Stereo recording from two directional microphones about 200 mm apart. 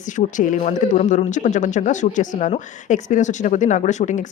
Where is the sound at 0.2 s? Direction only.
40° left (ahead or behind).